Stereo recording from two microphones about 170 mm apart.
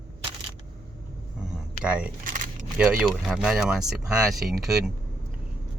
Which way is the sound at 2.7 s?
5° right (ahead or behind).